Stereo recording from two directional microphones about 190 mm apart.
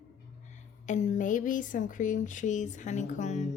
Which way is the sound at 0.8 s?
40° left (ahead or behind).